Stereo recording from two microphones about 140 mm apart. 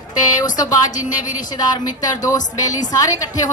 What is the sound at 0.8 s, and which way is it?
Speech, 65° left (ahead or behind).